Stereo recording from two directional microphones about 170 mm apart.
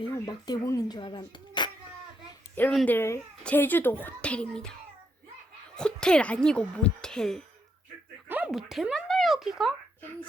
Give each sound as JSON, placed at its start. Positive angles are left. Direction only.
{"t": 0.1, "sound": "speech", "side_deg": 25}
{"t": 2.6, "sound": "speech", "side_deg": 10}
{"t": 5.7, "sound": "speech", "side_deg": 5}
{"t": 8.3, "sound": "a sound", "side_deg": -5}